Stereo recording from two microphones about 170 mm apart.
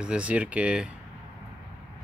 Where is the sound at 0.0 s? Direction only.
5° right (ahead or behind).